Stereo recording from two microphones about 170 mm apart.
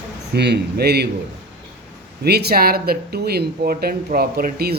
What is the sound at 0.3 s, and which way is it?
Speech, 75° right (ahead or behind).